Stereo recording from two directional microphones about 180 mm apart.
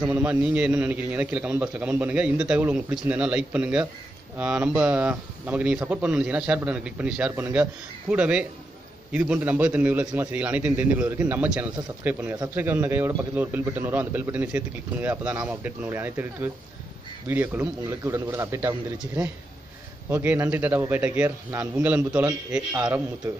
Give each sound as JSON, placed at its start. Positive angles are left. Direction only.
{"t": 0.0, "sound": "a man's voice", "side_deg": -10}